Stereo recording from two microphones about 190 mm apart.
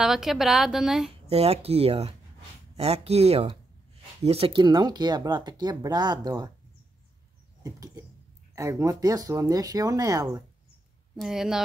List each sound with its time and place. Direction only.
0.0 s a woman's voice: centre (ahead or behind)
1.2 s speech: 30° right (ahead or behind)
7.6 s speech: 20° right (ahead or behind)
11.1 s a woman's voice: centre (ahead or behind)